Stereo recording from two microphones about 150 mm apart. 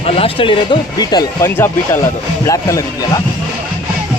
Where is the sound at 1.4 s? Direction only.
15° left (ahead or behind).